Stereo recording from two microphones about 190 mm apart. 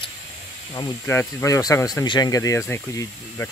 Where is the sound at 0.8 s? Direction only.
15° left (ahead or behind).